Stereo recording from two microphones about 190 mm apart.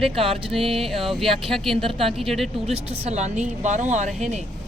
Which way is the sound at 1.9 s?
30° right (ahead or behind).